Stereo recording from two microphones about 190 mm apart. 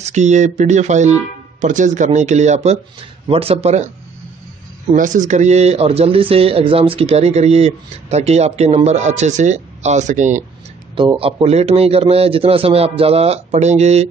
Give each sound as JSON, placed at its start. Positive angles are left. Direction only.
{"t": 0.0, "sound": "speech", "side_deg": -40}
{"t": 4.9, "sound": "speech", "side_deg": -40}
{"t": 11.0, "sound": "speech", "side_deg": -30}